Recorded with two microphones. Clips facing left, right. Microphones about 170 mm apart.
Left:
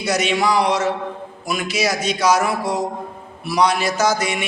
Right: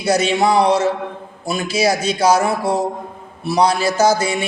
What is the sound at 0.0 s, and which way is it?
A man's voice, 30° right (ahead or behind).